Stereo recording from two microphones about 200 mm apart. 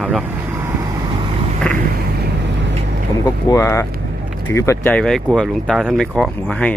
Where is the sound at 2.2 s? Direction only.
60° right (ahead or behind).